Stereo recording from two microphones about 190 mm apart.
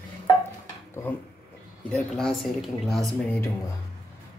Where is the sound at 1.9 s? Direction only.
5° left (ahead or behind).